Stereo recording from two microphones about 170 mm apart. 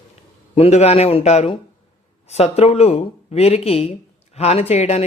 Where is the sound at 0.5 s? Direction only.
40° left (ahead or behind).